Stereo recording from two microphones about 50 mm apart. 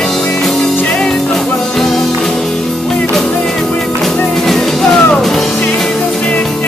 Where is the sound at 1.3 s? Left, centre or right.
Centre.